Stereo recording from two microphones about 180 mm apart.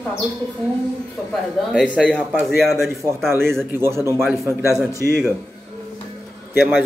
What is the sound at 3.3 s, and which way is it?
A man's voice, 15° right (ahead or behind).